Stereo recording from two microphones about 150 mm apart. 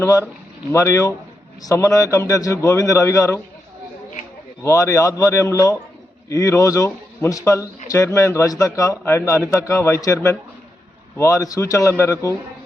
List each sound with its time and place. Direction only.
0.0 s a man's voice: 20° left (ahead or behind)
4.6 s a man's voice: 20° left (ahead or behind)